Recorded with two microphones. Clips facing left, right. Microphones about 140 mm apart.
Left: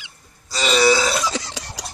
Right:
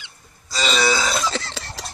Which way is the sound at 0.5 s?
5° left (ahead or behind).